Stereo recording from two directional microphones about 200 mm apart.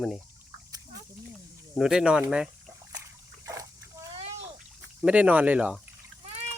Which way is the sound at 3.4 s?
15° right (ahead or behind).